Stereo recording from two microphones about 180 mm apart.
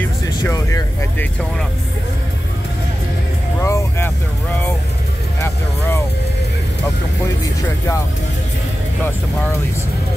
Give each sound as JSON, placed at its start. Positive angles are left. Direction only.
{"t": 0.0, "sound": "vehicle", "side_deg": 15}
{"t": 3.6, "sound": "speech", "side_deg": 15}
{"t": 5.4, "sound": "speech", "side_deg": 15}